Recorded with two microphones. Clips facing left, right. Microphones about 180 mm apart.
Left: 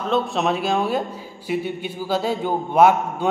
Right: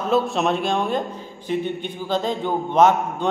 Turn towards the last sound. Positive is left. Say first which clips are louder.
# left 1 dB
turn(degrees=10)  # may be behind; listen again after turning